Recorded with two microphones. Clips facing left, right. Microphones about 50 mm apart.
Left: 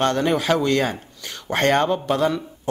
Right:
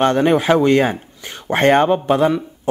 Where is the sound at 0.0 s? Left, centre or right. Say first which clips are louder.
Right 5 dB; right.